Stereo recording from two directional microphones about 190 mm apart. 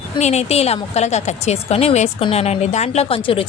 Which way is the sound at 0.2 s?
35° left (ahead or behind).